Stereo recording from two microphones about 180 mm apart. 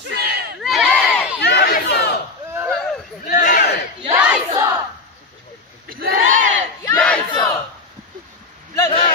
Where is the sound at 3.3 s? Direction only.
50° left (ahead or behind).